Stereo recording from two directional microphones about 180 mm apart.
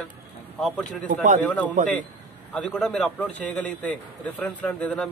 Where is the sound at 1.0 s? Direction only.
45° right (ahead or behind).